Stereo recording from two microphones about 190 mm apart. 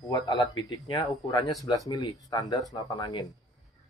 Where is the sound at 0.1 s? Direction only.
25° left (ahead or behind).